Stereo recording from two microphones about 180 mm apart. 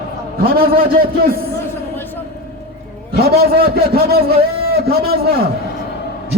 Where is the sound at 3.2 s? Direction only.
60° right (ahead or behind).